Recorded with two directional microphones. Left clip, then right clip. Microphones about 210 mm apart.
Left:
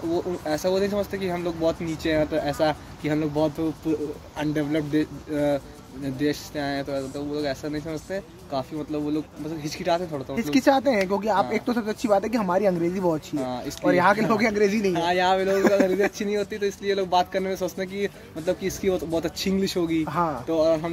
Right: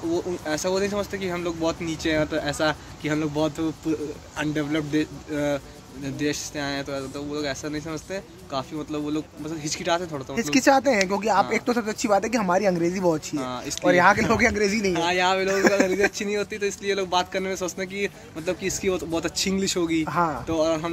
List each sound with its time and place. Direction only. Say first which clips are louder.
0.1 s speech: left 1 dB; 20° left (ahead or behind)
10.3 s speech: right 2 dB; 10° right (ahead or behind)
13.4 s speech: left 1 dB; 20° left (ahead or behind)
13.8 s speech: right 2 dB; 5° right (ahead or behind)
15.0 s speech: left 1 dB; 20° left (ahead or behind)
15.4 s speech: even; 5° right (ahead or behind)
16.2 s speech: even; 20° left (ahead or behind)
20.1 s speech: right 1 dB; 5° right (ahead or behind)
20.4 s speech: left 2 dB; 20° left (ahead or behind)